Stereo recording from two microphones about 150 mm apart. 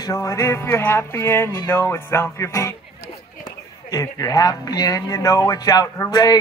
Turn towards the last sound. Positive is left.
turn(degrees=25)  # may be behind; listen again after turning